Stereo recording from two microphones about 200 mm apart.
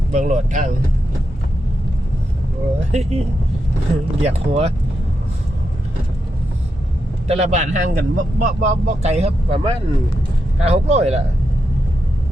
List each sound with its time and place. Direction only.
0.1 s speech: 35° right (ahead or behind)
2.9 s speech: 30° right (ahead or behind)
7.3 s speech: 35° right (ahead or behind)